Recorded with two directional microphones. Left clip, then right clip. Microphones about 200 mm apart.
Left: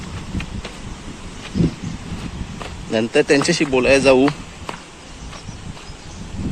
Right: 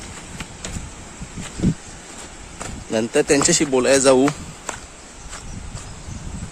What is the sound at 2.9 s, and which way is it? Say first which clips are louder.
Speech: left 2 dB; 15° right (ahead or behind).